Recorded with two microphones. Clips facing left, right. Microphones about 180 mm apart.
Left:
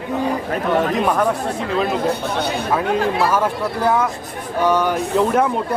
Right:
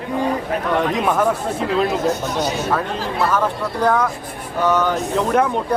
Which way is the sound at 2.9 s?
65° left (ahead or behind).